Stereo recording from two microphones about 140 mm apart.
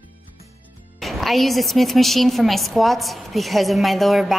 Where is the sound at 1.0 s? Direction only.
Centre (ahead or behind).